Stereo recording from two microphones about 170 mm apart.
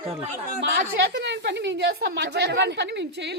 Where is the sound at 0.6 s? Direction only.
85° right.